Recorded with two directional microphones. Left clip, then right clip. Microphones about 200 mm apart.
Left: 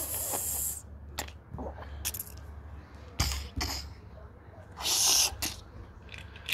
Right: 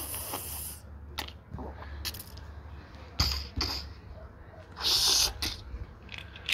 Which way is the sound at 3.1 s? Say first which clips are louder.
Right 4 dB; 35° left (ahead or behind).